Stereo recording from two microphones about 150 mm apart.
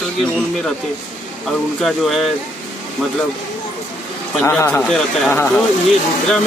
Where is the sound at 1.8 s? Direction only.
Centre (ahead or behind).